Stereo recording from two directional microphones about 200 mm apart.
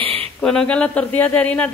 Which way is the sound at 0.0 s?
30° right (ahead or behind).